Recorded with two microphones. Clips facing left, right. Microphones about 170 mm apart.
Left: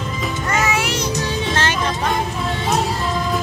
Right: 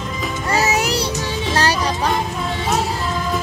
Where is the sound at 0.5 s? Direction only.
35° right (ahead or behind).